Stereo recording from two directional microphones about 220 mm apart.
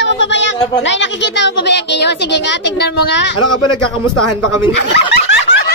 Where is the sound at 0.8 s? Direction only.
55° left (ahead or behind).